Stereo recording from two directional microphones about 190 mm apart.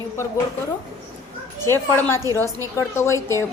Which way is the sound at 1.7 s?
10° left (ahead or behind).